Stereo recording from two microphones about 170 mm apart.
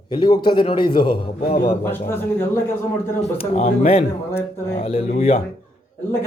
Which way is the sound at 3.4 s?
40° left (ahead or behind).